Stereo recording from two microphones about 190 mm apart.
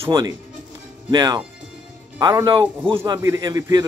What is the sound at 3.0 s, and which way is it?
Speech, 15° right (ahead or behind).